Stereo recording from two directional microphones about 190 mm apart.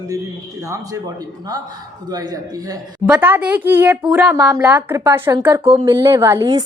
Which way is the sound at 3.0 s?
5° right (ahead or behind).